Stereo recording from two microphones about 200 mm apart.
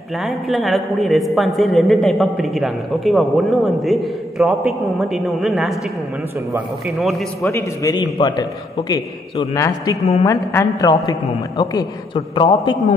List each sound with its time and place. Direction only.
0.2 s a man's voice: centre (ahead or behind)
7.5 s a man's voice: 20° left (ahead or behind)